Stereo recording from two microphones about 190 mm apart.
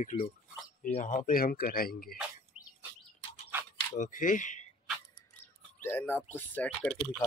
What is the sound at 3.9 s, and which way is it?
Speech, 45° left (ahead or behind).